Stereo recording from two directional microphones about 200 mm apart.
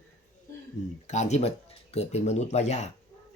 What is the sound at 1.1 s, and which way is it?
Speech, 35° left (ahead or behind).